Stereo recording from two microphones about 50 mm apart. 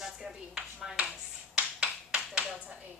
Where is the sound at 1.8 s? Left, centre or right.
Right.